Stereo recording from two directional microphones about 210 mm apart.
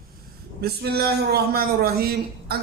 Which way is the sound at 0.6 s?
50° right (ahead or behind).